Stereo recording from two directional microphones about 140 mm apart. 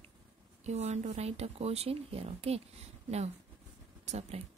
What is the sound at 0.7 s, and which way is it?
Speech, 50° right (ahead or behind).